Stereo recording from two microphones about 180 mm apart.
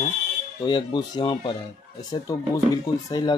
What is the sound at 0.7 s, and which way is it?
Speech, 25° left (ahead or behind).